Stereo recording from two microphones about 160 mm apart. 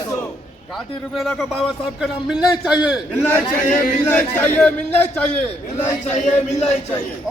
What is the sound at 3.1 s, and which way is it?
A man's voice, 10° left (ahead or behind).